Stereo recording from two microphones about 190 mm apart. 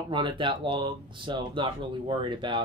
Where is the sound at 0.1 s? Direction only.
25° right (ahead or behind).